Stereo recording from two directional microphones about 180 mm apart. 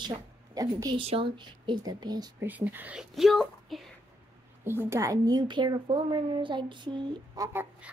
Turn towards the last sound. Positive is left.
turn(degrees=-10)  # may be behind; listen again after turning